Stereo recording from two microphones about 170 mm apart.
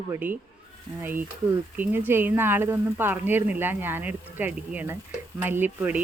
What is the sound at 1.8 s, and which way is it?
A woman's voice, 10° right (ahead or behind).